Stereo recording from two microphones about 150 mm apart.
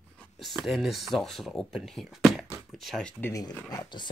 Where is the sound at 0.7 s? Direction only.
Centre (ahead or behind).